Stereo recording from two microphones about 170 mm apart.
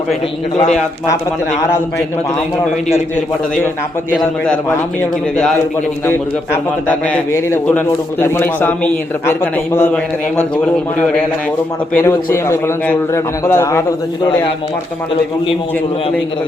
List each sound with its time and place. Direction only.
6.1 s a man's voice: 15° left (ahead or behind)
11.9 s a man's voice: 15° left (ahead or behind)